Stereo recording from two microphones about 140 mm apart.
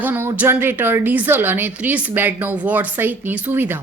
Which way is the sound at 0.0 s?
15° right (ahead or behind).